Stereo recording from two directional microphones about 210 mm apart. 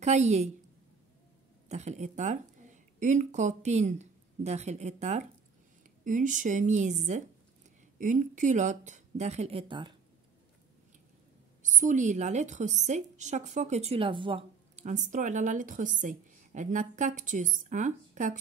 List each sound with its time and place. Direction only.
0.0 s a woman's voice: 30° right (ahead or behind)
1.7 s a woman's voice: 30° right (ahead or behind)
11.6 s a woman's voice: 35° right (ahead or behind)